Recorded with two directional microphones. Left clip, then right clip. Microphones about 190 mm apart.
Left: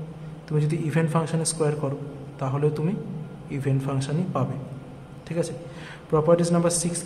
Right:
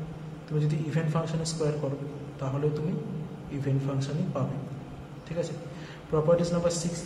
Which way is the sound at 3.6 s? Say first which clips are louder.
Left 4 dB; 40° left (ahead or behind).